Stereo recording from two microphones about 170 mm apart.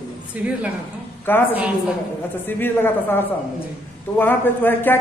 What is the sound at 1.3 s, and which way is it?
Speech, 10° left (ahead or behind).